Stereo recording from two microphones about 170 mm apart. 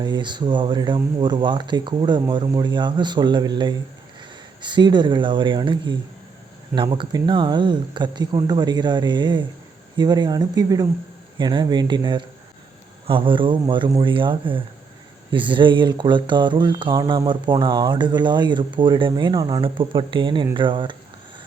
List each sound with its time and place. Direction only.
0.0 s speech: 25° right (ahead or behind)